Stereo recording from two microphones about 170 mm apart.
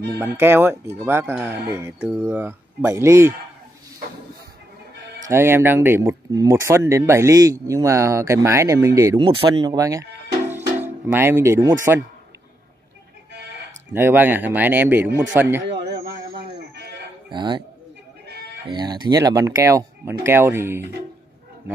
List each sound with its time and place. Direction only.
0.2 s speech: 15° right (ahead or behind)
5.3 s speech: 15° right (ahead or behind)
9.2 s speech: 30° right (ahead or behind)
9.8 s speech: 20° right (ahead or behind)
13.9 s speech: 10° right (ahead or behind)
15.7 s livestock: 80° right
17.3 s speech: 25° right (ahead or behind)
18.7 s speech: 25° right (ahead or behind)